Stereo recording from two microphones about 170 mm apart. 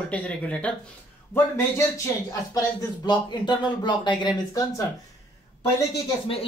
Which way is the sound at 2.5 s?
25° left (ahead or behind).